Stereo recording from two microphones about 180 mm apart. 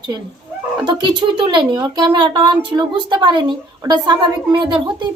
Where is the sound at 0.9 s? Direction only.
25° right (ahead or behind).